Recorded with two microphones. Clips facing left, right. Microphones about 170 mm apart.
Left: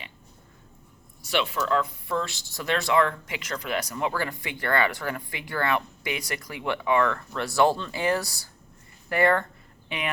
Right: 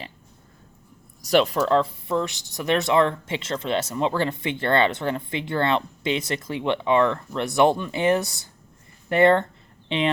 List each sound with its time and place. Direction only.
1.2 s speech: 40° right (ahead or behind)
2.1 s speech: 20° right (ahead or behind)